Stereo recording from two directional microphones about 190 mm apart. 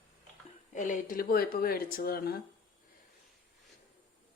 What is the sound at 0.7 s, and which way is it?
Speech, 40° left (ahead or behind).